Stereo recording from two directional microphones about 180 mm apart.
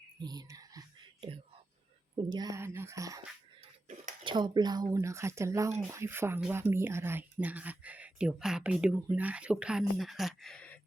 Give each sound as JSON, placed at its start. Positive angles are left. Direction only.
{"t": 0.2, "sound": "whispering", "side_deg": -20}
{"t": 2.1, "sound": "a sound", "side_deg": -25}
{"t": 4.2, "sound": "speech", "side_deg": -25}